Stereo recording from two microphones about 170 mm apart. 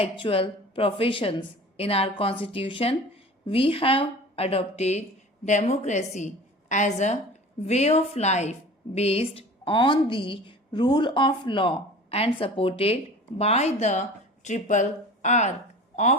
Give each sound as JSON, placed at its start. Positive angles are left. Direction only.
{"t": 0.0, "sound": "a woman's voice", "side_deg": 35}